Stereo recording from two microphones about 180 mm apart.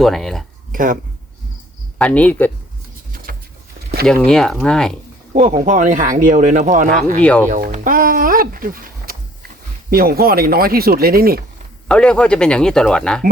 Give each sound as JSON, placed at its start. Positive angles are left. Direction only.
{"t": 0.0, "sound": "speech", "side_deg": 0}
{"t": 0.7, "sound": "speech", "side_deg": -50}
{"t": 2.0, "sound": "speech", "side_deg": 5}
{"t": 4.0, "sound": "speech", "side_deg": 5}
{"t": 5.3, "sound": "speech", "side_deg": -40}
{"t": 7.2, "sound": "speech", "side_deg": 5}
{"t": 7.4, "sound": "speech", "side_deg": -45}
{"t": 11.9, "sound": "speech", "side_deg": 5}